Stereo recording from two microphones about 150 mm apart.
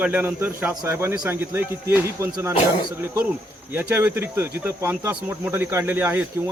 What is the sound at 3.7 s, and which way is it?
Speech, 15° right (ahead or behind).